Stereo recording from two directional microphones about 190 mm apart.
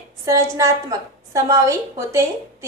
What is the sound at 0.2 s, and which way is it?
A woman's voice, 15° right (ahead or behind).